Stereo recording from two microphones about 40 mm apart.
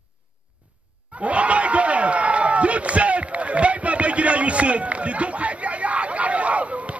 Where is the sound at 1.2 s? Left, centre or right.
Right.